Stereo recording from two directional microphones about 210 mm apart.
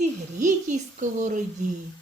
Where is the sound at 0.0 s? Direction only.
35° right (ahead or behind).